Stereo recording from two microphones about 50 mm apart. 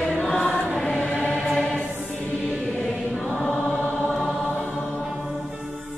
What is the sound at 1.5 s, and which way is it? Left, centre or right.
Music, centre.